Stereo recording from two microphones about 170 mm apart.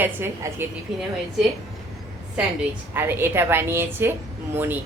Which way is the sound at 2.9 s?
15° right (ahead or behind).